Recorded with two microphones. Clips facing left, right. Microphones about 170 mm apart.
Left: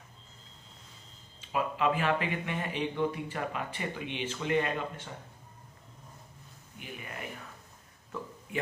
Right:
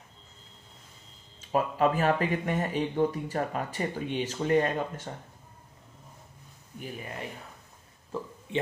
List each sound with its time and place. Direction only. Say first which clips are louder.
1.5 s speech: right 4 dB; 40° right (ahead or behind)
6.8 s a man's voice: right 4 dB; 30° right (ahead or behind)